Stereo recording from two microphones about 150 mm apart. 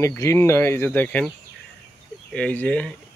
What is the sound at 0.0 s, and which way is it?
Speech, 20° left (ahead or behind).